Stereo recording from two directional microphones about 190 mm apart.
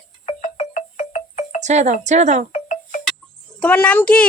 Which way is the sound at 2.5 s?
40° left (ahead or behind).